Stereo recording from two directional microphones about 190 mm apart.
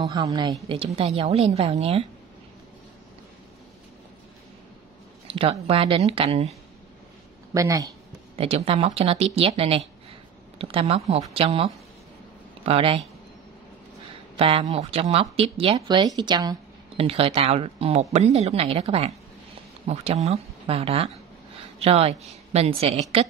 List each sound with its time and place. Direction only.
0.0 s a woman's voice: 20° right (ahead or behind)
5.3 s a woman's voice: 30° right (ahead or behind)
7.5 s speech: 15° right (ahead or behind)
8.4 s a woman's voice: 30° right (ahead or behind)
14.3 s a woman's voice: 30° right (ahead or behind)